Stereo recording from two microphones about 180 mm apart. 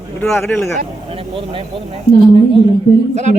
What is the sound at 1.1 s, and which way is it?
Speech, 30° right (ahead or behind).